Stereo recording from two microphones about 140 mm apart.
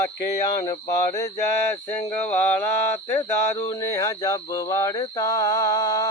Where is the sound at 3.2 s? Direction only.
25° left (ahead or behind).